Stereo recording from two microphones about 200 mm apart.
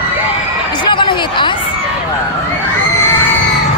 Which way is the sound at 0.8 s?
25° left (ahead or behind).